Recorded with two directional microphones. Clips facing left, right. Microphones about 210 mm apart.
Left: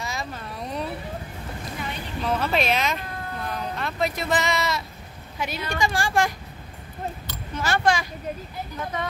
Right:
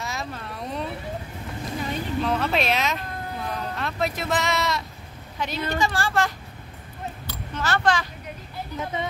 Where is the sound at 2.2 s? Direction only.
Centre (ahead or behind).